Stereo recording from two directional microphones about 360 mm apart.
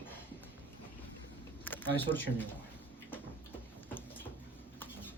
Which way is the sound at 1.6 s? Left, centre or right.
Centre.